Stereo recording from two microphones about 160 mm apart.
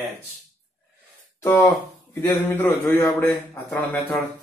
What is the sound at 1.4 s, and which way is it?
A man's voice, 15° left (ahead or behind).